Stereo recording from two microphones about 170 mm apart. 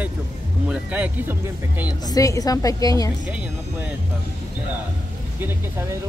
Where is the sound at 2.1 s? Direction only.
20° left (ahead or behind).